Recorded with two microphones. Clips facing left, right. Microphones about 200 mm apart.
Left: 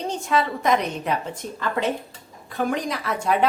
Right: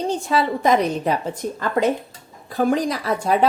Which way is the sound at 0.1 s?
35° right (ahead or behind).